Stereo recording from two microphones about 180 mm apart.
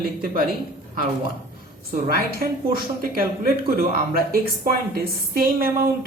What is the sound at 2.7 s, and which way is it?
Speech, 55° right (ahead or behind).